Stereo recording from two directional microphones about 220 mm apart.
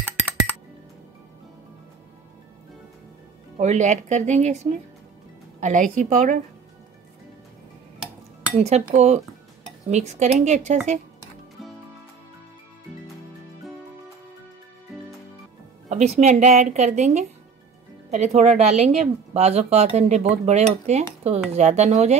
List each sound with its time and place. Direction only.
3.5 s a woman's voice: 30° right (ahead or behind)
5.6 s a woman's voice: 35° right (ahead or behind)
8.6 s a woman's voice: 30° right (ahead or behind)
16.2 s a woman's voice: 30° right (ahead or behind)